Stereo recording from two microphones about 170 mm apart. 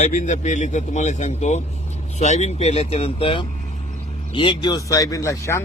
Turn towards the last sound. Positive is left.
turn(degrees=15)  # may be behind; listen again after turning